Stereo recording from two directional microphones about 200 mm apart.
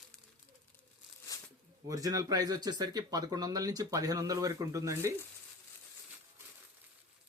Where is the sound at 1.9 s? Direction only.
15° right (ahead or behind).